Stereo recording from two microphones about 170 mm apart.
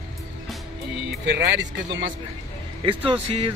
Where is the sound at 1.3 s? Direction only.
90° right.